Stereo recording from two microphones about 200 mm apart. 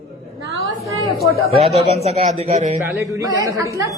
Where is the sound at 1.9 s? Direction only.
30° right (ahead or behind).